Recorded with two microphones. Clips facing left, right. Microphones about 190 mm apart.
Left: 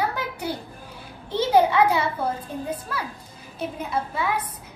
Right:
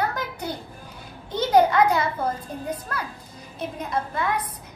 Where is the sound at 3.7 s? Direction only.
5° left (ahead or behind).